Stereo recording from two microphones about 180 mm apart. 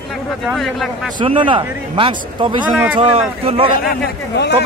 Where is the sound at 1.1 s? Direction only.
30° right (ahead or behind).